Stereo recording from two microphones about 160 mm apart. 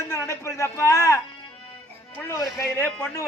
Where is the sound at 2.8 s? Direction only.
10° left (ahead or behind).